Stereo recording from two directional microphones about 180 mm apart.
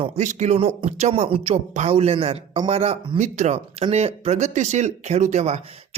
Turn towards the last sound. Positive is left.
turn(degrees=-40)  # may be behind; listen again after turning